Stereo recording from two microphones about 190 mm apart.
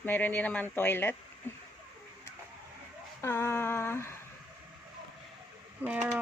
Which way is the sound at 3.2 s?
15° left (ahead or behind).